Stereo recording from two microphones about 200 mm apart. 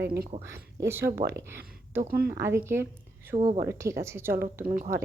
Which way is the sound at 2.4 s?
10° right (ahead or behind).